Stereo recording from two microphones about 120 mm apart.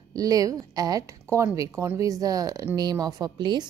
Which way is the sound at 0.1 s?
30° right (ahead or behind).